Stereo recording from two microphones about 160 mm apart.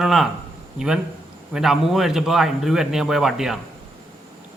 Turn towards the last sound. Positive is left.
turn(degrees=0)  # may be behind; listen again after turning